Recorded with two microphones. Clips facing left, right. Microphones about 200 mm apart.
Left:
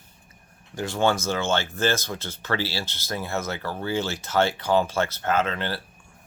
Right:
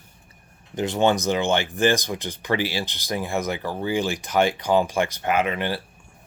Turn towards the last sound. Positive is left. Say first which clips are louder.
# right 2 dB
turn(degrees=-15)  # may be behind; listen again after turning